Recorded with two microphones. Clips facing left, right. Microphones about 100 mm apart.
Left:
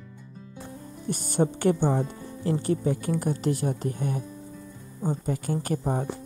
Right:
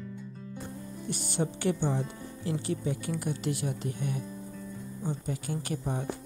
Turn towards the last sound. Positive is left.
turn(degrees=45)  # may be behind; listen again after turning